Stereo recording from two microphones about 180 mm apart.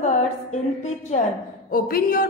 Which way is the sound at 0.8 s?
35° left (ahead or behind).